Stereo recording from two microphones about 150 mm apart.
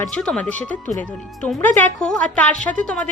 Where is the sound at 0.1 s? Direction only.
5° left (ahead or behind).